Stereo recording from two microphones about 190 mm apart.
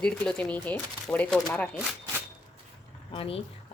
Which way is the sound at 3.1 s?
30° left (ahead or behind).